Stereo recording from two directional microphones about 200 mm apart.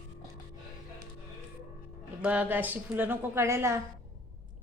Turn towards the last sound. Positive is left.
turn(degrees=-15)  # may be behind; listen again after turning